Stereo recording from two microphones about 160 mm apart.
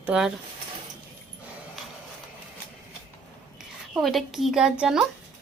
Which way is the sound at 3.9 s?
Centre (ahead or behind).